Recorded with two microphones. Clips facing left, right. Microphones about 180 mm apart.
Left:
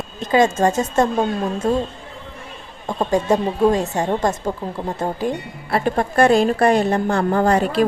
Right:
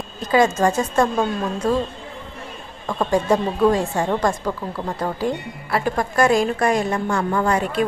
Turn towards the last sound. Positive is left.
turn(degrees=35)  # may be behind; listen again after turning